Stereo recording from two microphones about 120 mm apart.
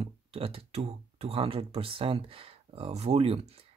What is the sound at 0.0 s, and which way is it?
Speech, 50° right (ahead or behind).